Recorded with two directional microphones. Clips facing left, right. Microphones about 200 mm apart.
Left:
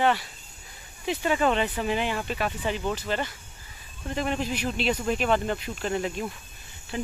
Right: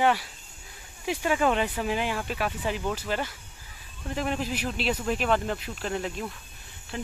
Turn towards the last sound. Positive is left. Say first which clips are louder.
# left 3 dB
turn(degrees=5)  # may be behind; listen again after turning